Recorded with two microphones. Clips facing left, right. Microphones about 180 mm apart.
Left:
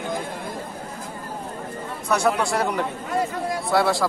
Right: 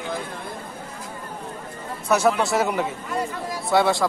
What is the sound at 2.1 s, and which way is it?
A man's voice, 5° right (ahead or behind).